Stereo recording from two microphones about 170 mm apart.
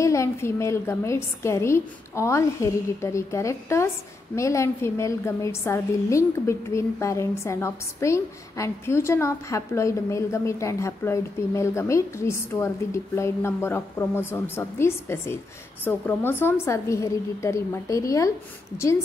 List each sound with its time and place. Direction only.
0.0 s a woman's voice: 15° left (ahead or behind)